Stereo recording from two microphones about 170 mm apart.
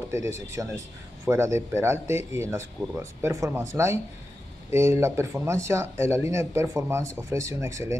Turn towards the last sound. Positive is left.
turn(degrees=-15)  # may be behind; listen again after turning